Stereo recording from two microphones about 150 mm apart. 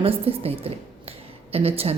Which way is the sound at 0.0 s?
40° right (ahead or behind).